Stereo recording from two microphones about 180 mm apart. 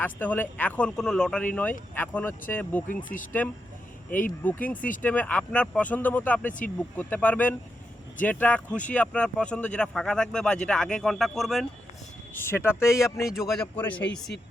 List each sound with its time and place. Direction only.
0.0 s speech: 10° left (ahead or behind)
2.9 s speech: 50° left (ahead or behind)
4.1 s speech: 10° left (ahead or behind)
12.3 s speech: 10° left (ahead or behind)
13.2 s speech: centre (ahead or behind)
13.7 s speech: 10° left (ahead or behind)